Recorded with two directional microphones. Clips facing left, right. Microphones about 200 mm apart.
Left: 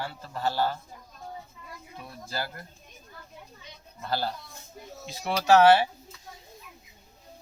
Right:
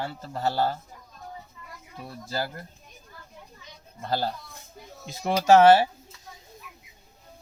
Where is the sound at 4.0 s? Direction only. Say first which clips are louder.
Right 2 dB; 25° right (ahead or behind).